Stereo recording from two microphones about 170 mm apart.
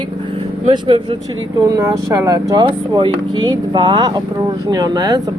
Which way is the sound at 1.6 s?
20° right (ahead or behind).